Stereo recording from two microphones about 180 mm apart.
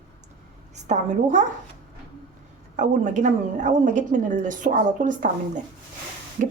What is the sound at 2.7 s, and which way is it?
A woman's voice, 45° right (ahead or behind).